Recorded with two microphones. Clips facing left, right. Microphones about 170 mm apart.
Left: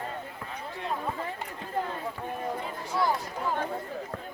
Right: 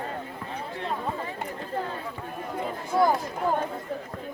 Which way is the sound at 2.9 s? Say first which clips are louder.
Right 5 dB; 50° right (ahead or behind).